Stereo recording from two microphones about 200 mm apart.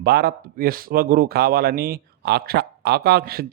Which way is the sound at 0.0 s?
50° right (ahead or behind).